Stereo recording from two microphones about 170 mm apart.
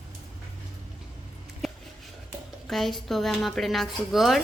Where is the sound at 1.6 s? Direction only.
Centre (ahead or behind).